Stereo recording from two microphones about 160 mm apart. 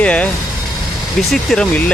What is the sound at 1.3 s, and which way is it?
Speech, 5° left (ahead or behind).